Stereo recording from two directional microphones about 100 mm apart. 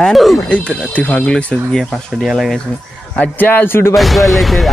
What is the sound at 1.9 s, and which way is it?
Speech, centre (ahead or behind).